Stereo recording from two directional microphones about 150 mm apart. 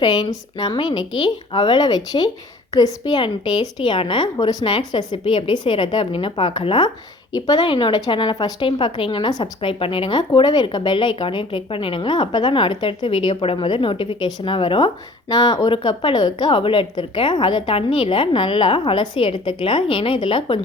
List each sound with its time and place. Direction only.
0.0 s speech: 30° left (ahead or behind)